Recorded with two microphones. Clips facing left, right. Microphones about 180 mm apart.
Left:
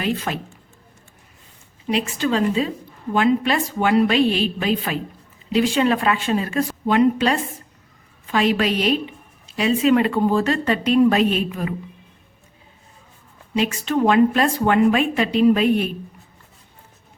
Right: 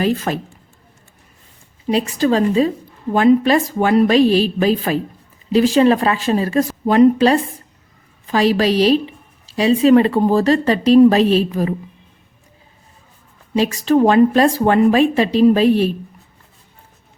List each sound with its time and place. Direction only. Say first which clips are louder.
0.0 s a woman's voice: right 6 dB; 40° right (ahead or behind)
1.9 s a woman's voice: right 5 dB; 35° right (ahead or behind)
13.5 s a woman's voice: right 6 dB; 35° right (ahead or behind)